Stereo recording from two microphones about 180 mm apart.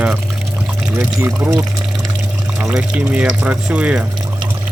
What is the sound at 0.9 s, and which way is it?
Speech, 15° right (ahead or behind).